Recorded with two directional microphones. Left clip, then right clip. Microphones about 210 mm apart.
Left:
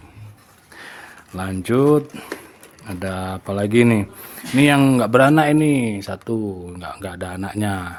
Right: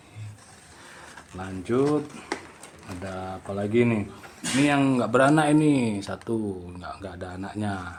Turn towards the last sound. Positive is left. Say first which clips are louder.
# left 7 dB
turn(degrees=40)  # may be behind; listen again after turning